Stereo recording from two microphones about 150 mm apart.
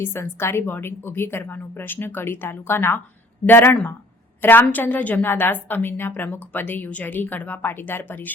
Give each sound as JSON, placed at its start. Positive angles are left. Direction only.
{"t": 0.0, "sound": "a woman's voice", "side_deg": 15}